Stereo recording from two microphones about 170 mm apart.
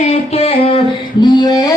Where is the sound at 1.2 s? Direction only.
25° left (ahead or behind).